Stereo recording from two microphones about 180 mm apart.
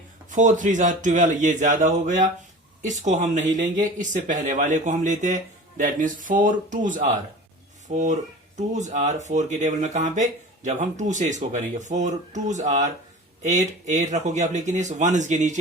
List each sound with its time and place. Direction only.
0.3 s speech: 45° right (ahead or behind)